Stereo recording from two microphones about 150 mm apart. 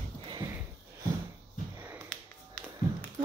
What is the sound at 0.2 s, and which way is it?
Sniff, 30° right (ahead or behind).